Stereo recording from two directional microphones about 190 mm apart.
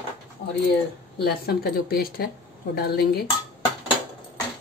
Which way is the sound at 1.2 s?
55° left (ahead or behind).